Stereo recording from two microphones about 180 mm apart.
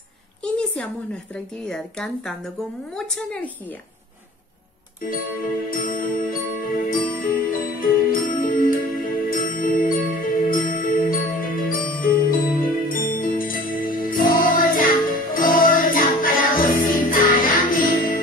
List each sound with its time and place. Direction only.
0.4 s a sound: 5° left (ahead or behind)
1.3 s speech: 5° left (ahead or behind)
5.7 s music: 50° left (ahead or behind)